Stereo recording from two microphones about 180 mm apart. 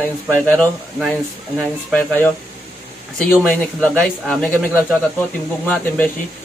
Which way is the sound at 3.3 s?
5° left (ahead or behind).